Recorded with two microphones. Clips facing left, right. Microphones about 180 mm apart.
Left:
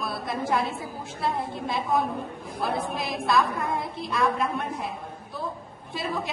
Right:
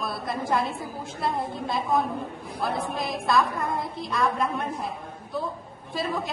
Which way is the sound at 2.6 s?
Centre (ahead or behind).